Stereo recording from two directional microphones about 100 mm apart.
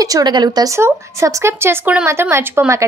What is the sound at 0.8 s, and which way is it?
Speech, 25° right (ahead or behind).